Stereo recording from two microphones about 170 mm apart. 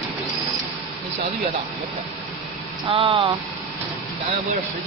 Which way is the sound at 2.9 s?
30° right (ahead or behind).